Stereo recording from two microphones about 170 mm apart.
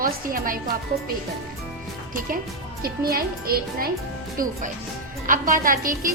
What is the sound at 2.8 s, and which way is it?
A woman's voice, 60° right (ahead or behind).